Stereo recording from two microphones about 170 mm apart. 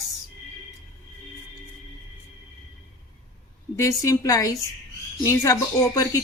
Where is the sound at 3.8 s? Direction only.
20° left (ahead or behind).